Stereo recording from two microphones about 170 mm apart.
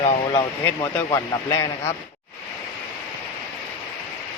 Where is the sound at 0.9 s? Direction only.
20° left (ahead or behind).